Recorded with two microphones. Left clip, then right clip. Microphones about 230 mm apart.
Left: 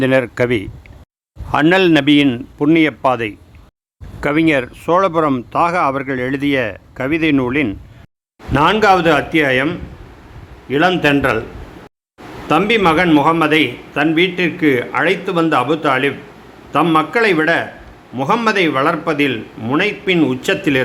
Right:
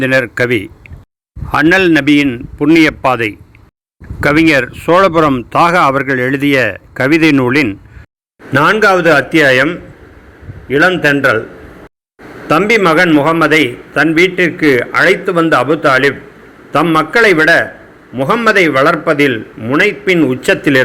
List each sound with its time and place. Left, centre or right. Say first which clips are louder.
0.0 s a man's voice: right 3 dB; centre
2.7 s a man's voice: right 5 dB; centre
8.5 s a man's voice: right 3 dB; centre
12.5 s a man's voice: right 4 dB; centre